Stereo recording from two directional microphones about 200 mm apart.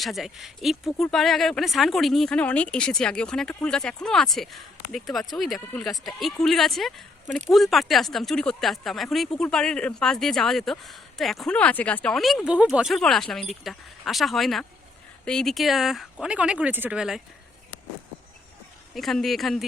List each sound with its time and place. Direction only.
0.0 s speech: centre (ahead or behind)
18.9 s speech: centre (ahead or behind)